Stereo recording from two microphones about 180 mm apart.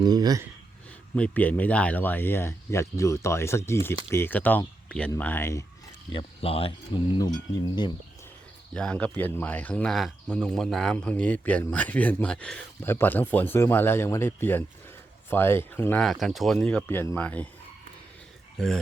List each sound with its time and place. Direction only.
0.0 s speech: 20° right (ahead or behind)
1.1 s speech: 10° left (ahead or behind)
6.1 s speech: 30° left (ahead or behind)
8.7 s speech: 5° left (ahead or behind)
18.5 s speech: 5° left (ahead or behind)